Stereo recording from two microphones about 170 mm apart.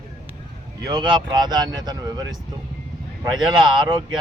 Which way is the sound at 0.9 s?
25° right (ahead or behind).